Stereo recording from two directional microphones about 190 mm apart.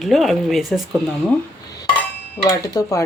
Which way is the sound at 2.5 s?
15° left (ahead or behind).